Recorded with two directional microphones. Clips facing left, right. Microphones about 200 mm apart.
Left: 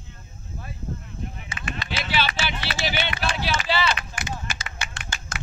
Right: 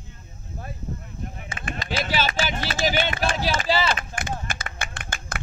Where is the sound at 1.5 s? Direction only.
50° right (ahead or behind).